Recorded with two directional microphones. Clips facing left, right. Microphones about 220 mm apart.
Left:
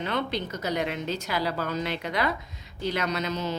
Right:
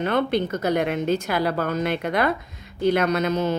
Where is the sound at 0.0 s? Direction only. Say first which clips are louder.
Right 8 dB; 55° right (ahead or behind).